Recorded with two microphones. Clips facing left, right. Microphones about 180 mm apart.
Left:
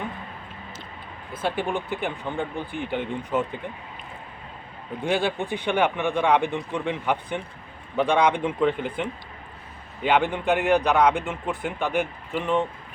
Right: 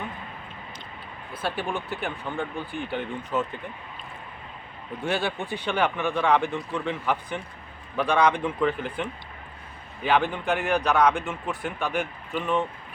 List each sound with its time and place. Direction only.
1.3 s a man's voice: 20° left (ahead or behind)
5.0 s a man's voice: 15° left (ahead or behind)